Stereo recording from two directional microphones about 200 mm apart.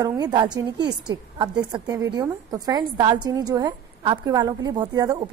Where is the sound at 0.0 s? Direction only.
20° right (ahead or behind).